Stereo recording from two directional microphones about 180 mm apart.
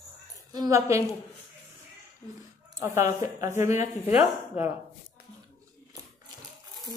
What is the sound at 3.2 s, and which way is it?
Speech, 15° right (ahead or behind).